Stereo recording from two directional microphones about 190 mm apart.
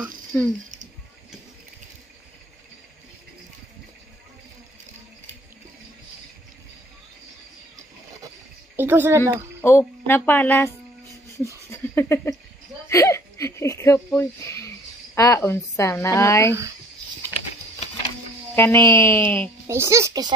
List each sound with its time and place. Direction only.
0.3 s a woman's voice: 15° left (ahead or behind)
8.7 s speech: 10° right (ahead or behind)
9.6 s a woman's voice: 10° left (ahead or behind)
11.7 s a sound: 15° left (ahead or behind)
12.8 s a woman's voice: 15° left (ahead or behind)
18.5 s a woman's voice: 10° left (ahead or behind)
19.7 s a child's voice: 15° right (ahead or behind)